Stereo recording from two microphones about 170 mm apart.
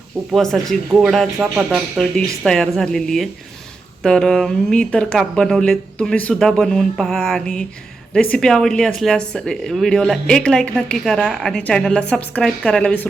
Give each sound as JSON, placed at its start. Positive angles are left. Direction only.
{"t": 0.3, "sound": "speech", "side_deg": 0}